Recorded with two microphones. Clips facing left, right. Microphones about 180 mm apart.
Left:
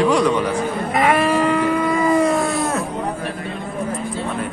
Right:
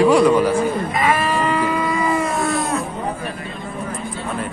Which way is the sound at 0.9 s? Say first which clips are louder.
Left 7 dB; 70° left (ahead or behind).